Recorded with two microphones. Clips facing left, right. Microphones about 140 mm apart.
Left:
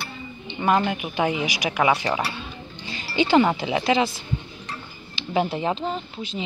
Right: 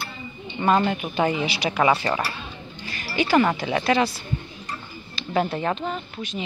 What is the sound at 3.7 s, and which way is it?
Speech, 20° left (ahead or behind).